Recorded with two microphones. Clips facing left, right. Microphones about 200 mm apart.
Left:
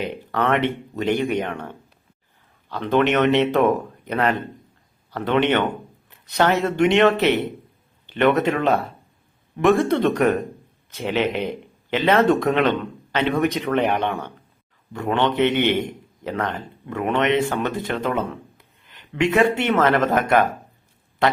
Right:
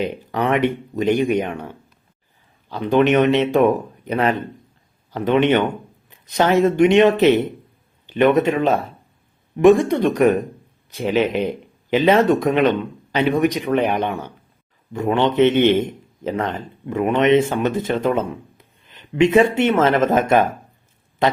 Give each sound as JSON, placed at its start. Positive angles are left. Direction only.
{"t": 0.0, "sound": "a man's voice", "side_deg": -15}